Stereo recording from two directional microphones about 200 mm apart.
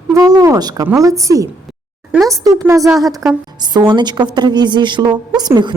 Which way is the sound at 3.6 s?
20° right (ahead or behind).